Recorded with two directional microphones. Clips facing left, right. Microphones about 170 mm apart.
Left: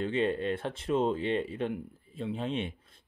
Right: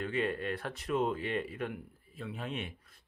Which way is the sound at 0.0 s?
25° left (ahead or behind).